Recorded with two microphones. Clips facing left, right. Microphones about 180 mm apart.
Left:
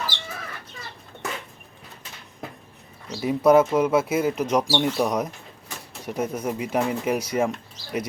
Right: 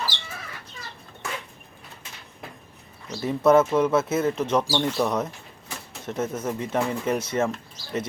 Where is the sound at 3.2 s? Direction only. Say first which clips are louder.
Left 1 dB; 10° left (ahead or behind).